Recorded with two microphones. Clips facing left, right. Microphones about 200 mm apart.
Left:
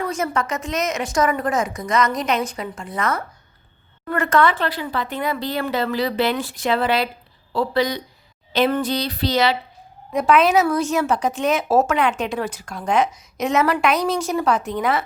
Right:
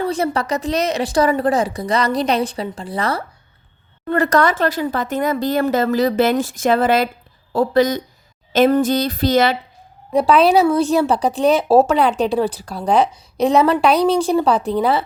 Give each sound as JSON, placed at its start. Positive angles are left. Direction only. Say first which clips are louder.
{"t": 0.0, "sound": "a woman's voice", "louder": "right 4 dB", "side_deg": -35}
{"t": 10.1, "sound": "a woman's voice", "louder": "right 3 dB", "side_deg": -35}